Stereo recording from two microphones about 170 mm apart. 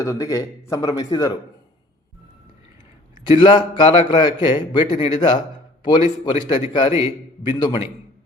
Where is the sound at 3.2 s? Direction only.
30° left (ahead or behind).